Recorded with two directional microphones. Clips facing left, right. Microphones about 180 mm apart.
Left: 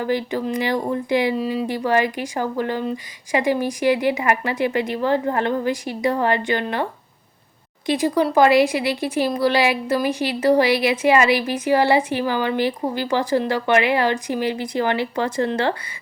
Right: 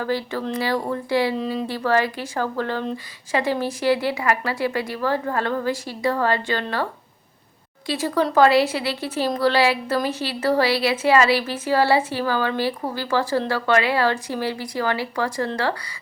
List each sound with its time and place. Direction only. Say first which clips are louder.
0.0 s a woman's voice: left 3 dB; 20° left (ahead or behind)
7.9 s a woman's voice: left 3 dB; 15° left (ahead or behind)